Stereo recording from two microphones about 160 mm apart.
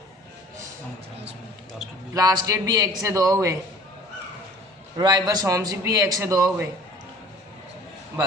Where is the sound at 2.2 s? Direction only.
20° right (ahead or behind).